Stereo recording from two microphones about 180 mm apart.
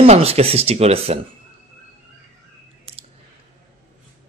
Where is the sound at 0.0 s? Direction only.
35° right (ahead or behind).